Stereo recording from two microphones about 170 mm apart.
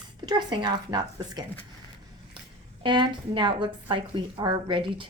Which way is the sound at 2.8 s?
30° right (ahead or behind).